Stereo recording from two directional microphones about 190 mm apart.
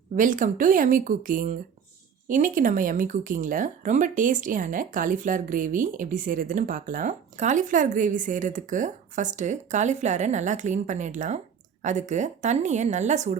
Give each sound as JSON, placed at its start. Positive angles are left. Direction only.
{"t": 0.2, "sound": "speech", "side_deg": -45}